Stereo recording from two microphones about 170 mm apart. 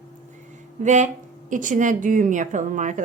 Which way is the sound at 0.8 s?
45° right (ahead or behind).